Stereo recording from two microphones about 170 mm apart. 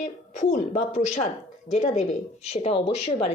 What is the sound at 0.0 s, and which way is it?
A woman's voice, 45° left (ahead or behind).